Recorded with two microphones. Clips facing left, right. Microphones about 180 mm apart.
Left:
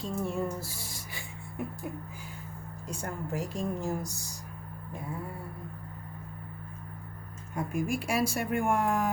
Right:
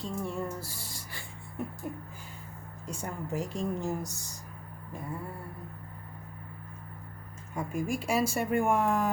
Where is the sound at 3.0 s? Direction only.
5° left (ahead or behind).